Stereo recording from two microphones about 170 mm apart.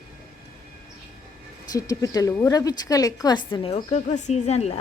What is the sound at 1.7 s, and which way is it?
A woman's voice, 20° left (ahead or behind).